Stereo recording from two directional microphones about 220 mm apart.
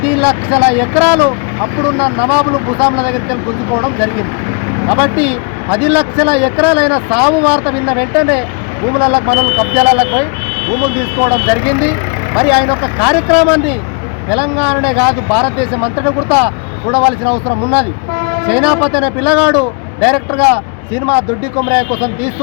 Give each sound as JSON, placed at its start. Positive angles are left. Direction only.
{"t": 0.0, "sound": "speech", "side_deg": -5}
{"t": 2.7, "sound": "speech", "side_deg": -25}
{"t": 3.0, "sound": "speech", "side_deg": -5}
{"t": 4.9, "sound": "speech", "side_deg": -5}